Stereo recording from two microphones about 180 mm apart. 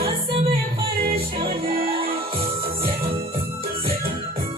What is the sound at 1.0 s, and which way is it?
Music, 60° right (ahead or behind).